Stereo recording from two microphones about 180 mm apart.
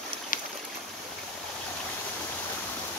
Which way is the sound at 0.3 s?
50° left (ahead or behind).